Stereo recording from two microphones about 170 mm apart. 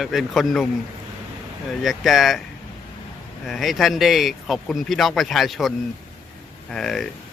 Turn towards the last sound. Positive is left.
turn(degrees=0)  # may be behind; listen again after turning